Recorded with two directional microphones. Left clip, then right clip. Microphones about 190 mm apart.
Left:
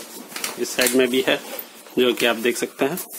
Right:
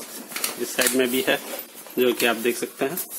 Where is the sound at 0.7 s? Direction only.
30° left (ahead or behind).